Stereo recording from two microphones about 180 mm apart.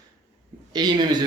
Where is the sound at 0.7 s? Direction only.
20° right (ahead or behind).